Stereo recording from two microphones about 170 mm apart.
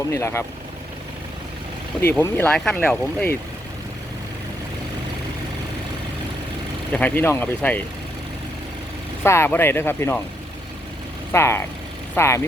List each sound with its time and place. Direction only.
0.1 s speech: 15° left (ahead or behind)
2.0 s speech: 10° left (ahead or behind)
6.9 s speech: 10° left (ahead or behind)
9.2 s speech: 15° left (ahead or behind)
11.3 s speech: 15° left (ahead or behind)